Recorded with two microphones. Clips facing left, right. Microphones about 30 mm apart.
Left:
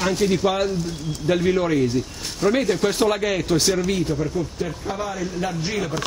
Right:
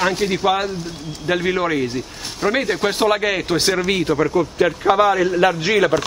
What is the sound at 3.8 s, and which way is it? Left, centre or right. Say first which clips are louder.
Speech: right 4 dB; right.